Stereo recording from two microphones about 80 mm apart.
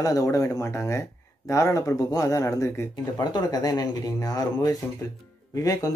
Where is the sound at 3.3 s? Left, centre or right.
Left.